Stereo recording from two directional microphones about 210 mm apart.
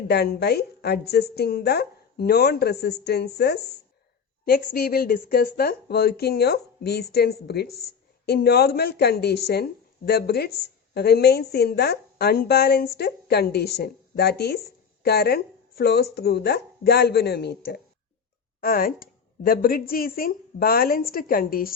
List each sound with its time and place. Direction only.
0.1 s a woman's voice: 50° left (ahead or behind)